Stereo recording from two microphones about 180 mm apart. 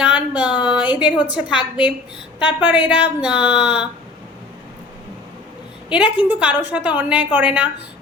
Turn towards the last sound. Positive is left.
turn(degrees=-10)  # may be behind; listen again after turning